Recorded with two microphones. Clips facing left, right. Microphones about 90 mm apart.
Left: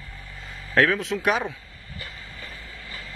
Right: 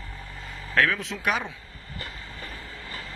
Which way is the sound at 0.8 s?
5° left (ahead or behind).